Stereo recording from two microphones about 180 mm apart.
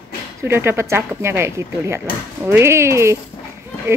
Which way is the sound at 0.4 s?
15° right (ahead or behind).